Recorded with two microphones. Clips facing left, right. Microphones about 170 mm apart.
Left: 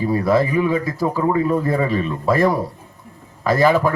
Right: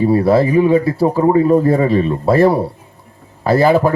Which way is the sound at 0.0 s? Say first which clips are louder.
Right 5 dB; 30° right (ahead or behind).